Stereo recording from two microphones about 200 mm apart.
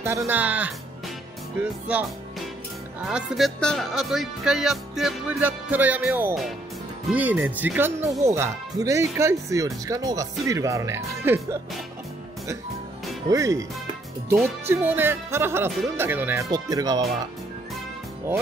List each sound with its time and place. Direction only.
0.0 s speech: 15° right (ahead or behind)
3.1 s speech: 5° right (ahead or behind)
13.3 s speech: 15° right (ahead or behind)
14.7 s speech: 10° right (ahead or behind)